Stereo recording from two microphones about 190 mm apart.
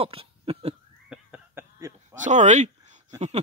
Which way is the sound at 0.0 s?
30° right (ahead or behind).